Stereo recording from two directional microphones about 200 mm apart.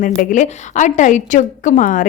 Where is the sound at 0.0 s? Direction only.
40° left (ahead or behind).